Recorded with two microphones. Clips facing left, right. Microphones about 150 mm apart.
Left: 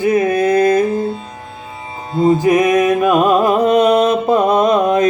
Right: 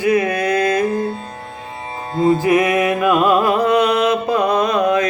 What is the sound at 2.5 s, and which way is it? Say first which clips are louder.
Music: left 3 dB; 15° left (ahead or behind).